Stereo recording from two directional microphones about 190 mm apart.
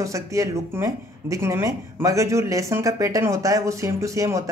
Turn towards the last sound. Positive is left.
turn(degrees=-15)  # may be behind; listen again after turning